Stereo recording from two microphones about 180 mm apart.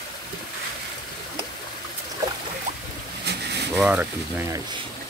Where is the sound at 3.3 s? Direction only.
65° right (ahead or behind).